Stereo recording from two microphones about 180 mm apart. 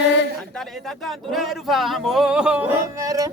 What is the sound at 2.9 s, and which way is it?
Music, 20° right (ahead or behind).